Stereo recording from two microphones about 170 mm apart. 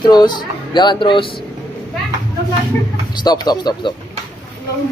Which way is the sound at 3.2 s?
25° left (ahead or behind).